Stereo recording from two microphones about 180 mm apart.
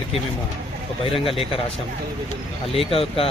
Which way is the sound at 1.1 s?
30° left (ahead or behind).